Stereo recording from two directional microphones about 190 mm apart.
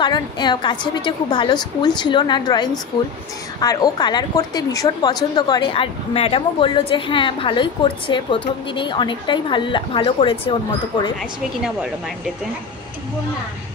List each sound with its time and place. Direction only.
0.0 s a woman's voice: 25° left (ahead or behind)